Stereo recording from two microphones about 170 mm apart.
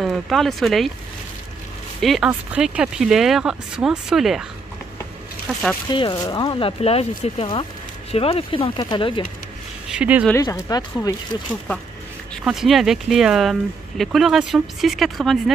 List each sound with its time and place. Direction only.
0.0 s speech: centre (ahead or behind)
2.0 s speech: centre (ahead or behind)
5.9 s speech: 25° left (ahead or behind)
9.8 s speech: 10° right (ahead or behind)
10.3 s speech: 20° left (ahead or behind)
12.4 s speech: centre (ahead or behind)